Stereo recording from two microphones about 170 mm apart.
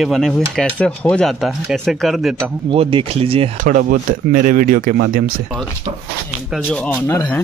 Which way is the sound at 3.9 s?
55° right (ahead or behind).